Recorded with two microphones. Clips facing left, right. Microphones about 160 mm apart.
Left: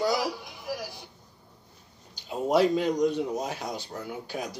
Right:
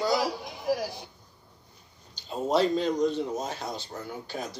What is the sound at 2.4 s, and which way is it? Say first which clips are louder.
Speech: left 2 dB; 15° left (ahead or behind).